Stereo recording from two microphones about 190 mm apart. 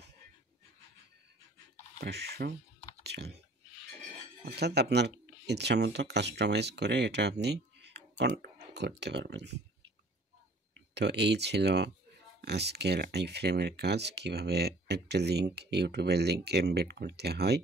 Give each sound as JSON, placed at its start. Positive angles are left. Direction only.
{"t": 2.0, "sound": "speech", "side_deg": -60}
{"t": 3.0, "sound": "chewing", "side_deg": -60}
{"t": 4.6, "sound": "speech", "side_deg": -60}
{"t": 11.0, "sound": "speech", "side_deg": -65}